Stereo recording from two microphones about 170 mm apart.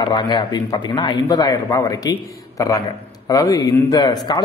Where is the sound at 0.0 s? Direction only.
25° left (ahead or behind).